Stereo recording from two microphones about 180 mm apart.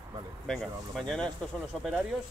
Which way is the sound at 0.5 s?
5° left (ahead or behind).